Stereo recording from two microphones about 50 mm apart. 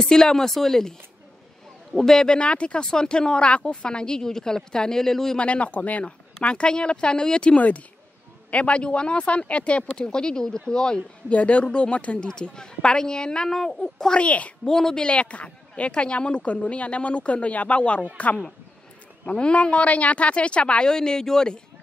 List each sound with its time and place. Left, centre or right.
0.0 s speech: centre
2.0 s speech: centre
5.4 s a woman's voice: left
14.2 s a woman's voice: left
14.6 s speech: centre
15.0 s a woman's voice: left